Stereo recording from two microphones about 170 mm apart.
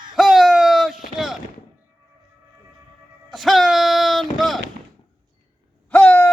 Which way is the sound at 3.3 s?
Centre (ahead or behind).